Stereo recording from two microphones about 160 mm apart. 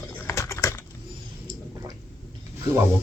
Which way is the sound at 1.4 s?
25° right (ahead or behind).